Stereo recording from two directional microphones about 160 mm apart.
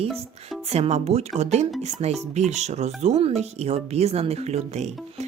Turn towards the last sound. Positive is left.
turn(degrees=-45)  # may be behind; listen again after turning